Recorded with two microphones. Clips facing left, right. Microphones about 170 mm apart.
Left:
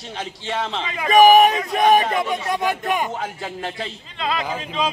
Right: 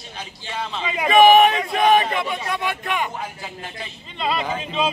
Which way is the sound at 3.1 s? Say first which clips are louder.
Left 4 dB; 80° left.